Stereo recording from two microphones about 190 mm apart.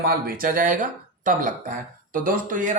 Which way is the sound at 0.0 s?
50° right (ahead or behind).